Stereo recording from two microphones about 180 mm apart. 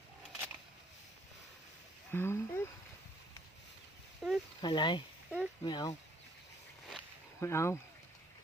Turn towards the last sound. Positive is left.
turn(degrees=15)  # may be behind; listen again after turning